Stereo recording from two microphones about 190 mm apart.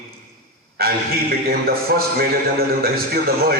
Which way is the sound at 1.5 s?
50° right (ahead or behind).